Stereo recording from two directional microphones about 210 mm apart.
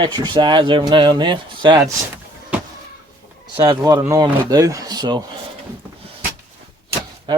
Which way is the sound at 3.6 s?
20° right (ahead or behind).